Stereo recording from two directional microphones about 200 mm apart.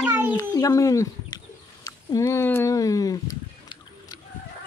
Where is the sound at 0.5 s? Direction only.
15° left (ahead or behind).